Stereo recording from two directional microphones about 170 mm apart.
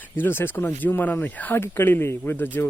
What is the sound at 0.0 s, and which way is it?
Speech, 10° left (ahead or behind).